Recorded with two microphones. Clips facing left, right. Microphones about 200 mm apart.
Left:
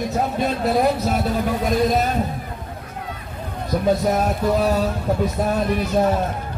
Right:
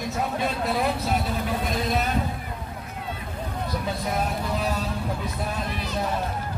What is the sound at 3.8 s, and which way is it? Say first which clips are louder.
Speech: left 11 dB; 45° left (ahead or behind).